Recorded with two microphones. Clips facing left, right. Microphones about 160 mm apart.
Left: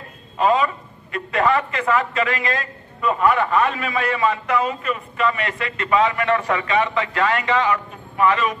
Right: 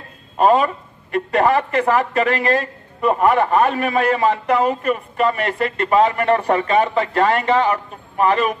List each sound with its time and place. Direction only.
0.4 s speech: 55° right (ahead or behind); by 4.4 s 40° right (ahead or behind)
4.5 s speech: 50° right (ahead or behind)
6.9 s a man's voice: 35° right (ahead or behind)
7.6 s a man's voice: 50° right (ahead or behind)